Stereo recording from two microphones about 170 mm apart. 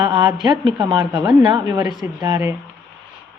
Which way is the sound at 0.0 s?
25° right (ahead or behind).